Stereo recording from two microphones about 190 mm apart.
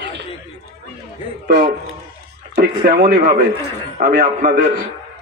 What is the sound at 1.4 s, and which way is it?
Speech, 40° right (ahead or behind).